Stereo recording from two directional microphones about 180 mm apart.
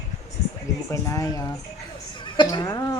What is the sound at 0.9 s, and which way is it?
A woman's voice, 15° left (ahead or behind).